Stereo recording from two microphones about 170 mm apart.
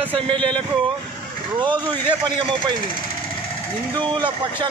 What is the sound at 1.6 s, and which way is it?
Speech, 25° right (ahead or behind).